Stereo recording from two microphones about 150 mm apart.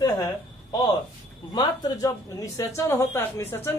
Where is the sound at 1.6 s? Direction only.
25° left (ahead or behind).